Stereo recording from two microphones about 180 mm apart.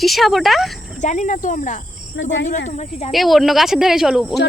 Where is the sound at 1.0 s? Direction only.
40° left (ahead or behind).